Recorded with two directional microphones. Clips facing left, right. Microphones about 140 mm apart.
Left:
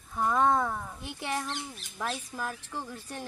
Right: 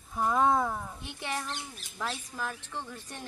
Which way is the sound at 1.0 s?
10° left (ahead or behind).